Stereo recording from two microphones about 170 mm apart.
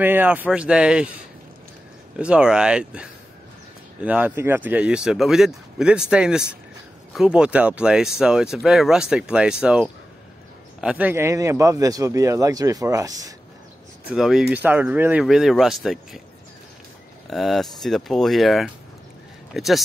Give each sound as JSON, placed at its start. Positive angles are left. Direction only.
{"t": 0.0, "sound": "speech", "side_deg": -10}
{"t": 2.1, "sound": "a man's voice", "side_deg": -5}
{"t": 14.0, "sound": "speech", "side_deg": -5}
{"t": 17.3, "sound": "speech", "side_deg": 0}